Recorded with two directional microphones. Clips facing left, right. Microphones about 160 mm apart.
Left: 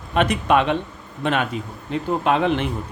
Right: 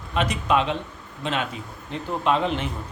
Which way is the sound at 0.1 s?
60° left (ahead or behind).